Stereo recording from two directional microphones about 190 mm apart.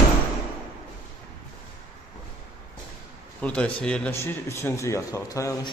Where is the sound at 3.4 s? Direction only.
5° left (ahead or behind).